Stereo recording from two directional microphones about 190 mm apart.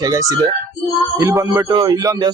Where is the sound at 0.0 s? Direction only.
20° right (ahead or behind).